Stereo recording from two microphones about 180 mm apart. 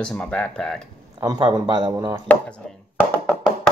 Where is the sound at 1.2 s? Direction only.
20° right (ahead or behind).